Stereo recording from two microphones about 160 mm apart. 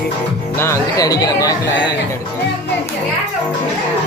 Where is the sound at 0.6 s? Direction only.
20° left (ahead or behind).